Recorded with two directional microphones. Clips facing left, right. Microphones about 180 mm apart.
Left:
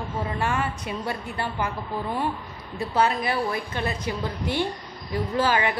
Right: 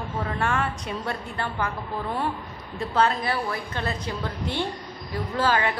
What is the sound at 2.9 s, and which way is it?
A woman's voice, 15° left (ahead or behind).